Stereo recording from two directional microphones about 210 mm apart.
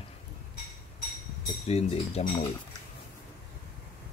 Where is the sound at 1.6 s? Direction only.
30° left (ahead or behind).